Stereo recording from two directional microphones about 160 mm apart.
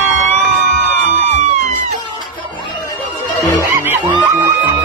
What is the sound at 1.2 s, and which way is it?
Music, 45° right (ahead or behind).